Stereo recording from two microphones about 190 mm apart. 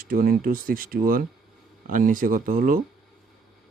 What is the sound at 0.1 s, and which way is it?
Speech, 50° right (ahead or behind).